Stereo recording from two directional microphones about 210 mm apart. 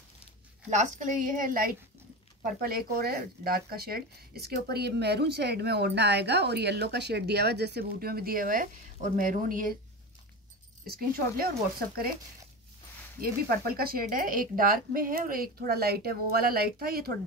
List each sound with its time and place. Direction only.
0.7 s a woman's voice: 35° right (ahead or behind)
10.9 s speech: 45° right (ahead or behind)
13.2 s speech: 45° right (ahead or behind)